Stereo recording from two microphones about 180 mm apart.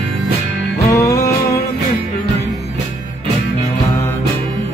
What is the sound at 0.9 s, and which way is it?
Music, 20° left (ahead or behind).